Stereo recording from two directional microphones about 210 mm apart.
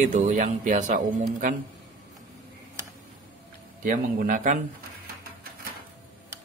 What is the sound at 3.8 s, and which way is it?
Speech, 40° right (ahead or behind).